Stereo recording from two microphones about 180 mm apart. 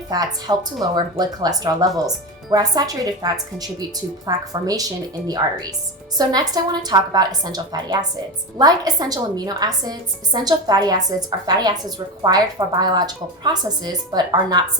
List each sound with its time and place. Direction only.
0.1 s a woman's voice: 20° right (ahead or behind)
6.1 s a woman's voice: 20° right (ahead or behind)